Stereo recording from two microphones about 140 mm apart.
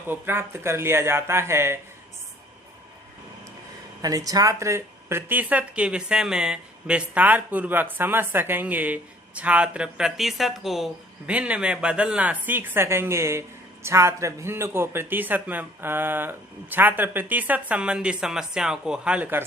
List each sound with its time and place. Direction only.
0.1 s speech: 15° right (ahead or behind)
4.0 s speech: 25° right (ahead or behind)